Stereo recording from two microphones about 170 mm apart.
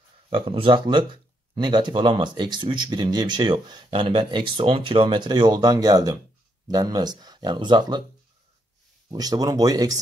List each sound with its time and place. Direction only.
0.3 s speech: 30° right (ahead or behind)
9.1 s speech: 20° right (ahead or behind)